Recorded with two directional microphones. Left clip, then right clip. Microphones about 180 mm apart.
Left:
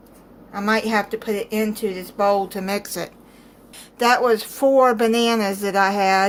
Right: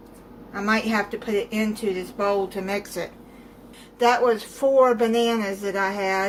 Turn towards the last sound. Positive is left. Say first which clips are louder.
# left 7 dB
turn(degrees=60)  # may be behind; listen again after turning